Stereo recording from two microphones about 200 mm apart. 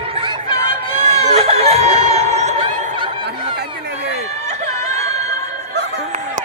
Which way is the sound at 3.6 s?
55° right (ahead or behind).